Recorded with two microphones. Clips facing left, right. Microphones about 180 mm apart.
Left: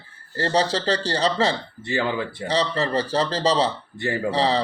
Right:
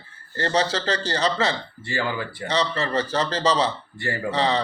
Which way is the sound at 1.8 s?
20° left (ahead or behind).